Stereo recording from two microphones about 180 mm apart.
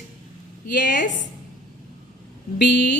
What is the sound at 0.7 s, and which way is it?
Speech, 70° left (ahead or behind).